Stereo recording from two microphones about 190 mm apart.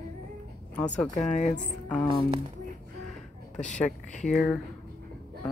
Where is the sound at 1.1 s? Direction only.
40° left (ahead or behind).